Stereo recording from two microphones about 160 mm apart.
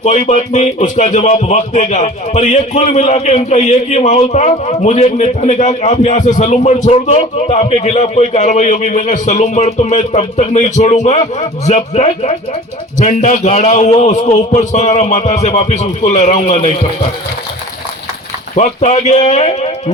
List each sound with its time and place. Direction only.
0.0 s speech: 45° left (ahead or behind)
18.5 s speech: 45° left (ahead or behind)